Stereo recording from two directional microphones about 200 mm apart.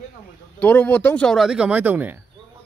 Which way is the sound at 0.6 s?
10° left (ahead or behind).